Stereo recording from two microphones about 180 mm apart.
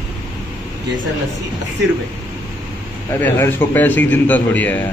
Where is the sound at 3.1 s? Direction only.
10° left (ahead or behind).